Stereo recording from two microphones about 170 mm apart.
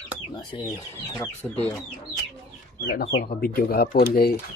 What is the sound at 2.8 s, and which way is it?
Speech, 90° left.